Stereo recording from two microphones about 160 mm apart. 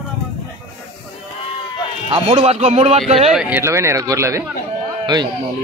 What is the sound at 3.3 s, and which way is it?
A man's voice, 5° right (ahead or behind).